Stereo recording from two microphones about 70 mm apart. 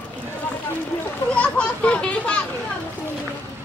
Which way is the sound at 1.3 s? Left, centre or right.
Centre.